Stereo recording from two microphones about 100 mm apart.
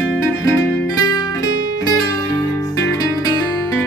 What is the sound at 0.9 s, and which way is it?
Music, 40° left (ahead or behind).